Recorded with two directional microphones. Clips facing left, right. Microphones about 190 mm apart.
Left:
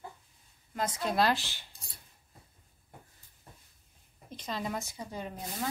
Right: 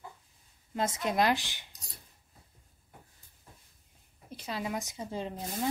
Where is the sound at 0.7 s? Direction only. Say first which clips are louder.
Right 1 dB; 25° right (ahead or behind).